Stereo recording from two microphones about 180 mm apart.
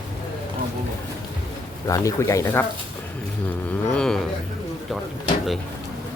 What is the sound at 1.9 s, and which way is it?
Speech, 15° left (ahead or behind).